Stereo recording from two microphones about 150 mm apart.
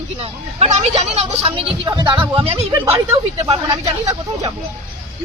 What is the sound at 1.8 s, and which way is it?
A woman's voice, 30° right (ahead or behind).